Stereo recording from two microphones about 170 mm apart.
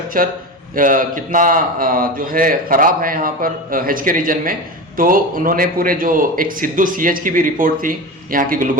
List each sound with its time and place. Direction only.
0.1 s a man's voice: 55° right (ahead or behind)